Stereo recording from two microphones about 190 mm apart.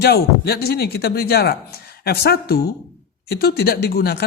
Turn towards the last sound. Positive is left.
turn(degrees=55)  # may be behind; listen again after turning